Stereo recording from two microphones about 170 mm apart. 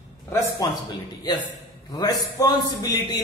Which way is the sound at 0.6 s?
20° left (ahead or behind).